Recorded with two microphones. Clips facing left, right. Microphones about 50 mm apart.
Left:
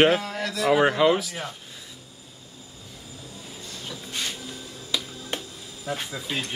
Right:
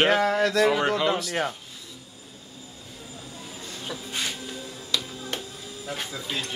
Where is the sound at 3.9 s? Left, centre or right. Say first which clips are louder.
Right 1 dB; centre.